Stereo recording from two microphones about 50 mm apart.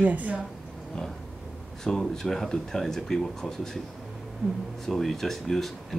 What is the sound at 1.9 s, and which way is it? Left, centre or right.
Speech, centre.